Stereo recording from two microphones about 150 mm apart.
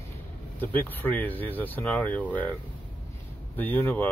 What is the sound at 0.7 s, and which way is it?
Speech, 10° left (ahead or behind).